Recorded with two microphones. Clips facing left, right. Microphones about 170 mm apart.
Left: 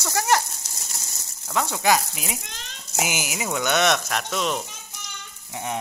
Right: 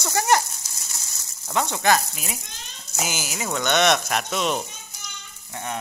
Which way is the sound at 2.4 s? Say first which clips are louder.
Left 3 dB; 80° left.